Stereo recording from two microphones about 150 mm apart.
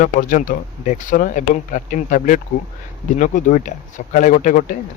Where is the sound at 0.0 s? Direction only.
60° left (ahead or behind).